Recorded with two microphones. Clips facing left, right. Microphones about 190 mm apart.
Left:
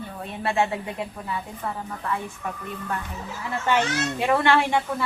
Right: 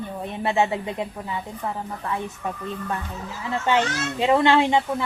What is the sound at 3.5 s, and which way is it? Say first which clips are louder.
Speech: right 1 dB; 20° right (ahead or behind).